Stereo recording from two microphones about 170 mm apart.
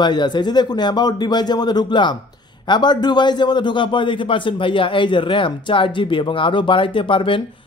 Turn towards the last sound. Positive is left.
turn(degrees=30)  # may be behind; listen again after turning